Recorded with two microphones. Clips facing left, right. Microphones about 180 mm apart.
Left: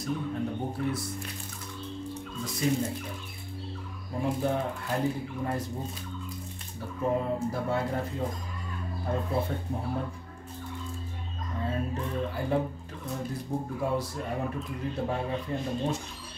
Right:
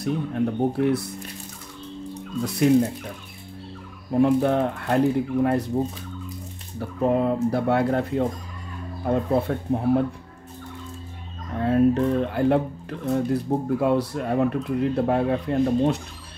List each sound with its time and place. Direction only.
0.0 s speech: 65° right (ahead or behind)
2.4 s speech: 65° right (ahead or behind)
4.1 s speech: 70° right (ahead or behind)
7.0 s speech: 75° right (ahead or behind)
11.5 s speech: 70° right (ahead or behind)